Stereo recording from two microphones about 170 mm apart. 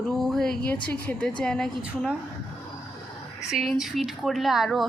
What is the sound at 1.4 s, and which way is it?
Speech, 5° left (ahead or behind).